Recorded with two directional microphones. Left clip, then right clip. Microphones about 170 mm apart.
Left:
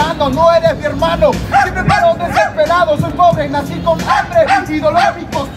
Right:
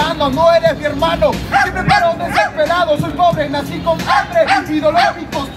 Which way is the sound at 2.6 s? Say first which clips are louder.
Left 2 dB; 5° right (ahead or behind).